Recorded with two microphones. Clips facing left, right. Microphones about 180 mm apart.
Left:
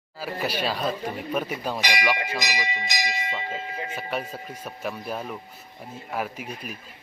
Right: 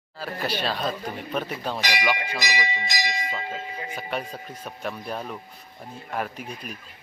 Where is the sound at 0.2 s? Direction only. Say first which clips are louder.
Left 1 dB; 10° left (ahead or behind).